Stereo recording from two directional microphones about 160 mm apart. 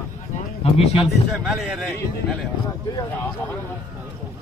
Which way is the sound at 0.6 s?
40° left (ahead or behind).